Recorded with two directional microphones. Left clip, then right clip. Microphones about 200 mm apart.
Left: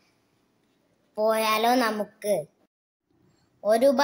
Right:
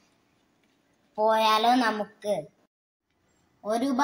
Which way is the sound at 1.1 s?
35° left (ahead or behind).